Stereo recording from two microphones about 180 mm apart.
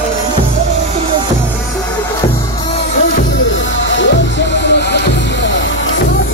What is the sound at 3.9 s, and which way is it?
Music, 80° left.